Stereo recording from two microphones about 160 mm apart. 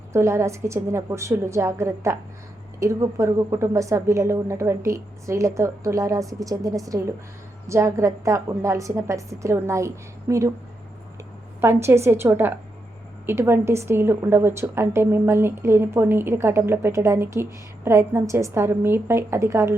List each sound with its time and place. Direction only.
0.1 s a woman's voice: 15° right (ahead or behind)
11.6 s a woman's voice: 15° right (ahead or behind)